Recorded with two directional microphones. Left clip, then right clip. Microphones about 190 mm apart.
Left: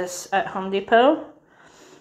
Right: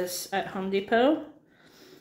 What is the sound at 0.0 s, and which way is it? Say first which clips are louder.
Speech: left 7 dB; 10° right (ahead or behind).